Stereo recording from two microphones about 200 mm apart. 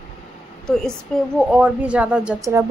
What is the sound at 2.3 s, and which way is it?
Speech, 15° right (ahead or behind).